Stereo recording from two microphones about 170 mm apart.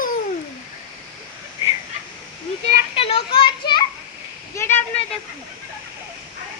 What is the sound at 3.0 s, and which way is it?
Children playing, 35° left (ahead or behind).